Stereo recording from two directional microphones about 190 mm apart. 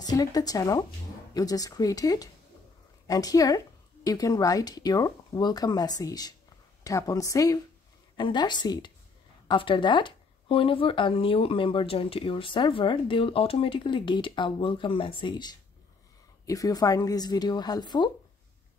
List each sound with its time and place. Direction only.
0.0 s a woman's voice: 20° left (ahead or behind)